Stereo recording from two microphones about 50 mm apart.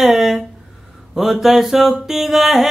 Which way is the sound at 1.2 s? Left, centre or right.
Centre.